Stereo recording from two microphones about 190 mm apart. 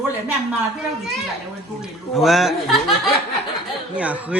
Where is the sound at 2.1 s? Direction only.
Centre (ahead or behind).